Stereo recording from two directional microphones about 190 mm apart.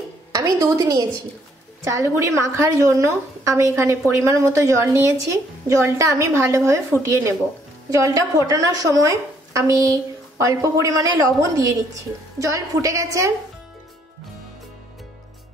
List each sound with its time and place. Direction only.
0.3 s a woman's voice: 20° right (ahead or behind)
7.9 s a woman's voice: 15° right (ahead or behind)